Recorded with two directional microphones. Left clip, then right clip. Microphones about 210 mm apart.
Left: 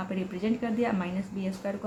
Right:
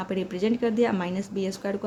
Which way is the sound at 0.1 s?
45° right (ahead or behind).